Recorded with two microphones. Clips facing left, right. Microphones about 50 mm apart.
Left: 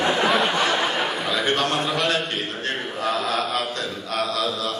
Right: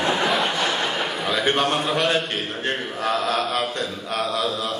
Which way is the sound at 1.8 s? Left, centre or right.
Centre.